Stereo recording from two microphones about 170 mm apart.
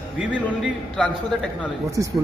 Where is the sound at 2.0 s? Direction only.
20° right (ahead or behind).